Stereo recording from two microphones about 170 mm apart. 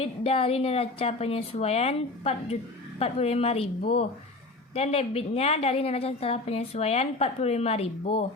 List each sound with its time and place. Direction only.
0.0 s a woman's voice: 35° left (ahead or behind)